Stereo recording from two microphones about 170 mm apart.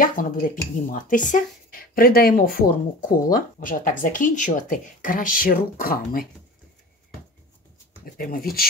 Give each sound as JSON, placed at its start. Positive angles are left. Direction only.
{"t": 0.0, "sound": "speech", "side_deg": 55}
{"t": 8.0, "sound": "speech", "side_deg": 60}